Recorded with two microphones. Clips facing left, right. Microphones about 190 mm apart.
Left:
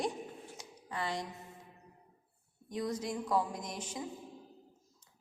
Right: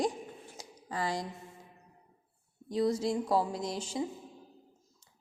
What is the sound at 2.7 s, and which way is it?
A woman's voice, 30° right (ahead or behind).